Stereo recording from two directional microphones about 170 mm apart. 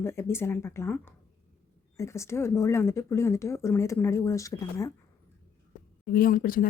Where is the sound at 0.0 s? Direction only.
15° left (ahead or behind).